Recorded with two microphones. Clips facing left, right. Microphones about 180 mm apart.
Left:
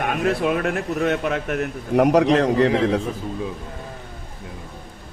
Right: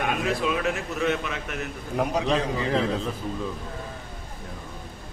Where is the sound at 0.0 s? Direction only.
55° left (ahead or behind); by 3.0 s 80° left.